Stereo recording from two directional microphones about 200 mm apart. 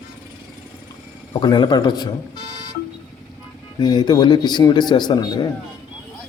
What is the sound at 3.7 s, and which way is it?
A man's voice, 20° left (ahead or behind).